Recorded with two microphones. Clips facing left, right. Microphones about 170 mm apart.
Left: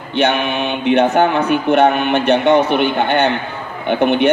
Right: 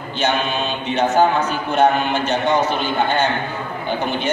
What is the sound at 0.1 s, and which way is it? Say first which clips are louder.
Speech: left 4 dB; 65° left (ahead or behind).